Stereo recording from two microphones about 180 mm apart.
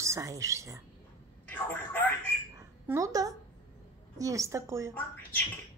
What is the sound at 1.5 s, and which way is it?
Telephone, 10° left (ahead or behind).